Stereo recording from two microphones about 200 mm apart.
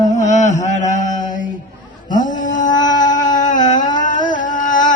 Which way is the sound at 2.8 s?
40° left (ahead or behind).